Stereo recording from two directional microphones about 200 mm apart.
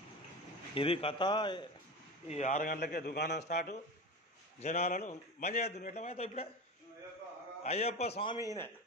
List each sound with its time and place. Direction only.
0.7 s a man's voice: 25° left (ahead or behind)
2.2 s a man's voice: 35° left (ahead or behind); by 3.4 s 60° left (ahead or behind)
3.4 s a man's voice: 35° left (ahead or behind)
7.6 s a man's voice: 30° left (ahead or behind)